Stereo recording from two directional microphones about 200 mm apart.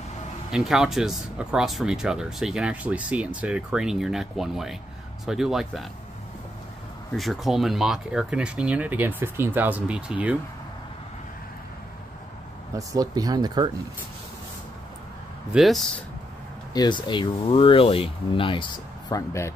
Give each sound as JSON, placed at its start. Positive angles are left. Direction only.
{"t": 0.5, "sound": "speech", "side_deg": 0}
{"t": 7.2, "sound": "speech", "side_deg": 0}
{"t": 12.7, "sound": "speech", "side_deg": -20}
{"t": 15.5, "sound": "speech", "side_deg": 0}
{"t": 16.7, "sound": "speech", "side_deg": 20}